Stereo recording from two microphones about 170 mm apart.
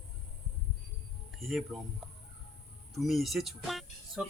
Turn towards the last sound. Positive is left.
turn(degrees=0)  # may be behind; listen again after turning